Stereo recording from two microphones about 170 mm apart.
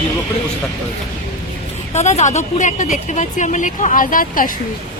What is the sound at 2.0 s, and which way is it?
Speech, 45° left (ahead or behind).